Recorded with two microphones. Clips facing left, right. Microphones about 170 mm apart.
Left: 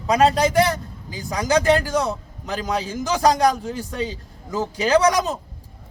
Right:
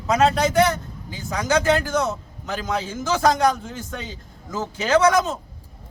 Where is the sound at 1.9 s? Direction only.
10° left (ahead or behind).